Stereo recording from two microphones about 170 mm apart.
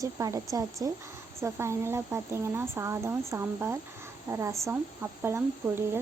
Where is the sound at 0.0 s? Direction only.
20° right (ahead or behind).